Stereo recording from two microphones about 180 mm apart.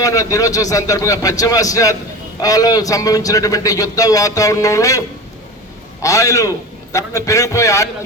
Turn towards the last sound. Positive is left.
turn(degrees=15)  # may be behind; listen again after turning